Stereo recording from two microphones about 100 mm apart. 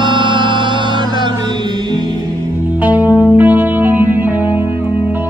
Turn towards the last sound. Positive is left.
turn(degrees=-20)  # may be behind; listen again after turning